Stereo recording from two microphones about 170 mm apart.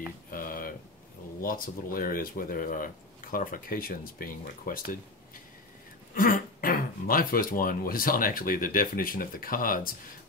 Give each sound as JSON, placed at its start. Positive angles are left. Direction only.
{"t": 0.3, "sound": "a sound", "side_deg": 55}
{"t": 1.4, "sound": "speech", "side_deg": 55}
{"t": 6.1, "sound": "speech", "side_deg": 55}